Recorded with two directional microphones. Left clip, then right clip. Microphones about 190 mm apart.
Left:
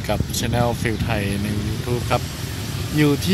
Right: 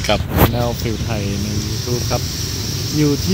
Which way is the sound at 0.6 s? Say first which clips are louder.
Even; 15° left (ahead or behind).